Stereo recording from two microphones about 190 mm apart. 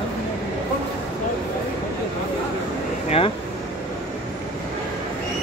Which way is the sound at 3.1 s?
30° left (ahead or behind).